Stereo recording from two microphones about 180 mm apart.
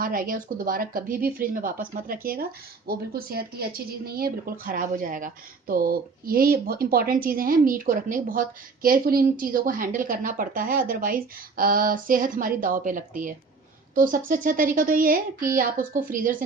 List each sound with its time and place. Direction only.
0.0 s speech: 50° right (ahead or behind)